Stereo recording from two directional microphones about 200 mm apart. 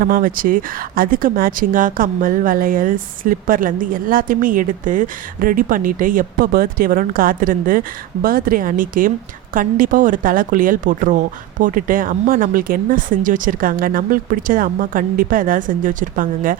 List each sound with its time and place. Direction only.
0.0 s speech: 45° right (ahead or behind)